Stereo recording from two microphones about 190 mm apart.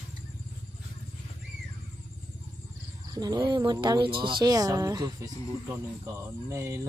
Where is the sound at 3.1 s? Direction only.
20° right (ahead or behind).